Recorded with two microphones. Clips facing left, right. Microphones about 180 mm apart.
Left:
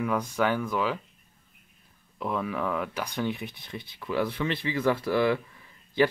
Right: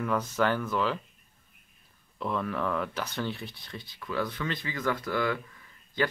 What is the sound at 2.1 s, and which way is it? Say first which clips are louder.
Speech: left 1 dB; 5° left (ahead or behind).